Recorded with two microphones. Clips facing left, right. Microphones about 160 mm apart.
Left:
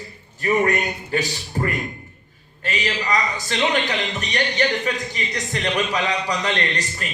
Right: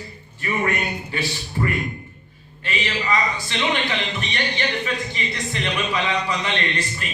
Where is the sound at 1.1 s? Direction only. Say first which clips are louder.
Left 6 dB; 40° left (ahead or behind).